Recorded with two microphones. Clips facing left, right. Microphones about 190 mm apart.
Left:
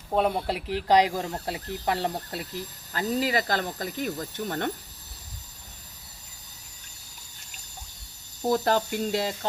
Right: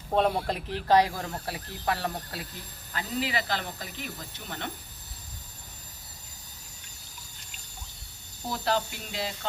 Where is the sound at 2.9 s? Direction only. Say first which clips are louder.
Left 5 dB; 40° left (ahead or behind).